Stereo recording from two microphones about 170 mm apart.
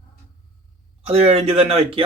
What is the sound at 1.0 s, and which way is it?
Speech, 35° right (ahead or behind).